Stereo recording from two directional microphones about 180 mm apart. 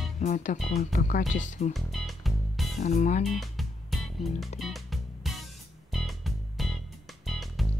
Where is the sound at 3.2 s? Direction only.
Centre (ahead or behind).